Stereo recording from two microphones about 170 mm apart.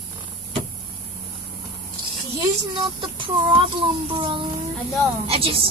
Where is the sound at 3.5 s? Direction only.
30° right (ahead or behind).